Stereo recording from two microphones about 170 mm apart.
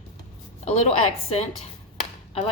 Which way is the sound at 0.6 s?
40° left (ahead or behind).